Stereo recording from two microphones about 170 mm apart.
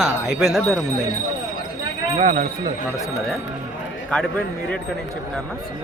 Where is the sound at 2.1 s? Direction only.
40° right (ahead or behind).